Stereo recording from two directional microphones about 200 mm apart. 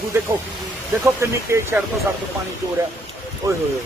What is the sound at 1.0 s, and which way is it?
Speech, 15° right (ahead or behind).